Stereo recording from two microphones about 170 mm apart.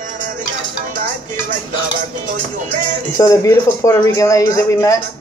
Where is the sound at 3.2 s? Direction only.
20° left (ahead or behind).